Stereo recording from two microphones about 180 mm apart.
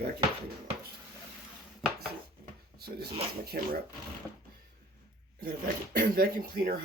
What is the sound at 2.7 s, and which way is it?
Speech, 60° right (ahead or behind).